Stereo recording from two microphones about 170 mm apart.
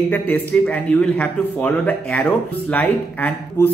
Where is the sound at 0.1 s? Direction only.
10° left (ahead or behind).